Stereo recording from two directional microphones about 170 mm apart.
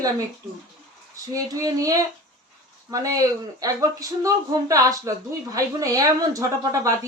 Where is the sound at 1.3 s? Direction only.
20° right (ahead or behind).